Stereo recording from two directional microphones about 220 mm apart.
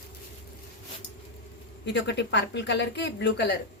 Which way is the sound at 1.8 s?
50° left (ahead or behind).